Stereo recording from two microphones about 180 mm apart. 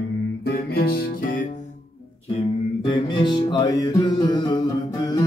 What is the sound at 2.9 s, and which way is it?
Music, 25° left (ahead or behind).